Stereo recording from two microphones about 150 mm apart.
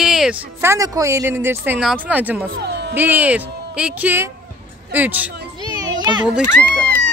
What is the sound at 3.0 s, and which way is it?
Speech, 10° right (ahead or behind).